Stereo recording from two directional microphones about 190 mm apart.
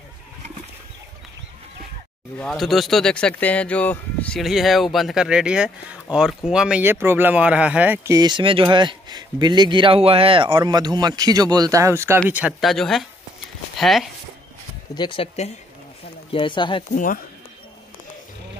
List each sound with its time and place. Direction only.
2.3 s speech: 5° left (ahead or behind)
15.0 s speech: 25° left (ahead or behind)
16.9 s speech: 45° left (ahead or behind)